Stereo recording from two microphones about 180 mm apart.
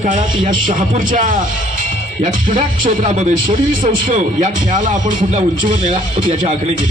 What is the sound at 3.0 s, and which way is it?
Speech, 40° right (ahead or behind).